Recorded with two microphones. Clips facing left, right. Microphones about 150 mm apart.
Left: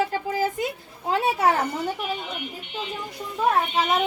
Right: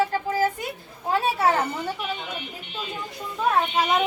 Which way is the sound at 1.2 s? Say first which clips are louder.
Left 1 dB; 15° left (ahead or behind).